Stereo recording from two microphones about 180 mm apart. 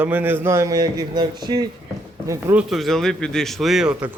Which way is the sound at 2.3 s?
10° right (ahead or behind).